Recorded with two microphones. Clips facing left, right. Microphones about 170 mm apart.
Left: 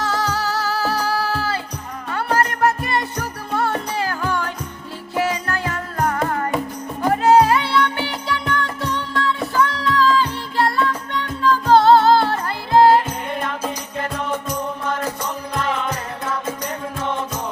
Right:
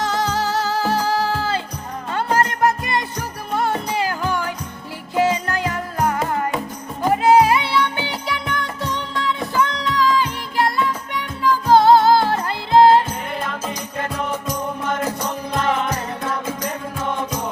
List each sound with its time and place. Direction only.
0.0 s music: 20° right (ahead or behind)